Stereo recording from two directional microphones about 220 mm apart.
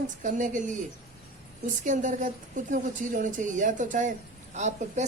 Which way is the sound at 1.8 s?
35° right (ahead or behind).